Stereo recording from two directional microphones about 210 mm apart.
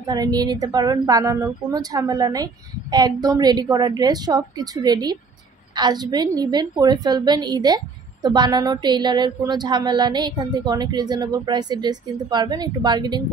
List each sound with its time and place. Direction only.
0.0 s a woman's voice: 20° right (ahead or behind)